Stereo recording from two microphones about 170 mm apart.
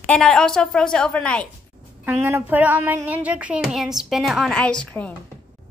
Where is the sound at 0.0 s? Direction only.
5° left (ahead or behind).